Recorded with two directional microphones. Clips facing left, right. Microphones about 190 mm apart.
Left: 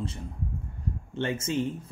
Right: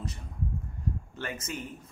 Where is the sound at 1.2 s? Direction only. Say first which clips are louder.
Left 9 dB; 30° left (ahead or behind).